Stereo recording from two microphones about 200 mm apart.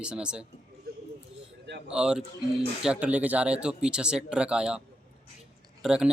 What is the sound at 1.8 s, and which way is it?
Speech, 5° right (ahead or behind).